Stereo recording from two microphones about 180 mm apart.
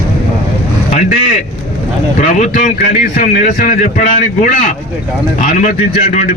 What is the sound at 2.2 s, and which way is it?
A man's voice, 45° left (ahead or behind).